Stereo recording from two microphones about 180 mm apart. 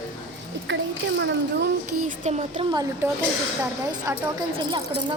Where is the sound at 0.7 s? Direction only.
90° right.